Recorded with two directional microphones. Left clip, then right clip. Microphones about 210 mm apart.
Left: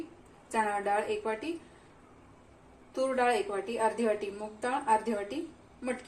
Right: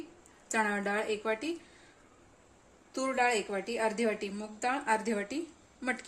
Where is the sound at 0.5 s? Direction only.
50° right (ahead or behind).